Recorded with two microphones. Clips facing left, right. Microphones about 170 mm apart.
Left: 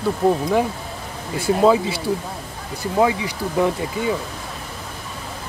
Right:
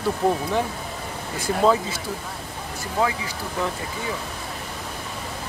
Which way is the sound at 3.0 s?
20° left (ahead or behind).